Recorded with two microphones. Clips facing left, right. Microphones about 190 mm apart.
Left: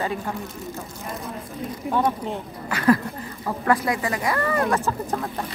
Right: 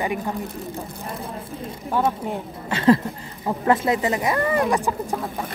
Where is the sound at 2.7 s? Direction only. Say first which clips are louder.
Right 2 dB; 25° right (ahead or behind).